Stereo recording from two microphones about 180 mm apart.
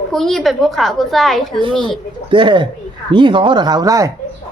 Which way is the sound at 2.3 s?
25° right (ahead or behind).